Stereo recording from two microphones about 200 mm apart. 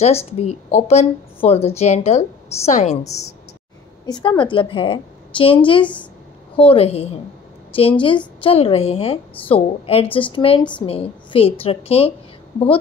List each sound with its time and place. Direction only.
0.0 s a woman's voice: 30° left (ahead or behind)
4.0 s a woman's voice: 20° left (ahead or behind)